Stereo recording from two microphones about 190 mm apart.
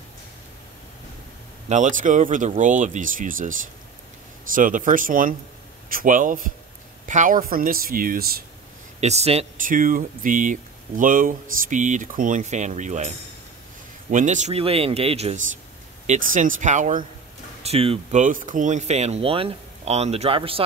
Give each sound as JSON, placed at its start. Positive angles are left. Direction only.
{"t": 1.7, "sound": "speech", "side_deg": -40}
{"t": 9.0, "sound": "speech", "side_deg": -35}
{"t": 14.1, "sound": "speech", "side_deg": -40}